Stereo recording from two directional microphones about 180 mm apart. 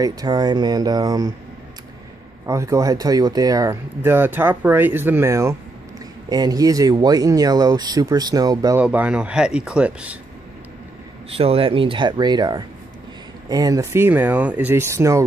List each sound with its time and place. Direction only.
0.0 s speech: 20° right (ahead or behind)
2.4 s speech: 15° right (ahead or behind)
8.8 s speech: 5° right (ahead or behind)
11.2 s speech: 30° right (ahead or behind); by 15.2 s 15° right (ahead or behind)